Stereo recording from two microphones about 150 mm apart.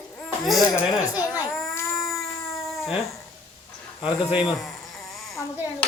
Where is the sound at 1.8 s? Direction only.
20° left (ahead or behind).